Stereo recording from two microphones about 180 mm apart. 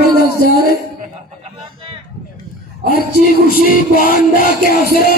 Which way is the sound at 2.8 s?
60° right (ahead or behind).